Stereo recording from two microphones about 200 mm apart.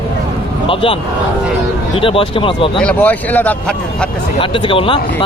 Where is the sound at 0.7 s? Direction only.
25° left (ahead or behind).